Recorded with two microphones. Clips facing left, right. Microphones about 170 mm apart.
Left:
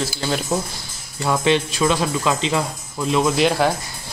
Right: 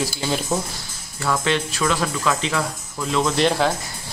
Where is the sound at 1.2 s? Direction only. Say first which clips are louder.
Left 3 dB; 20° left (ahead or behind).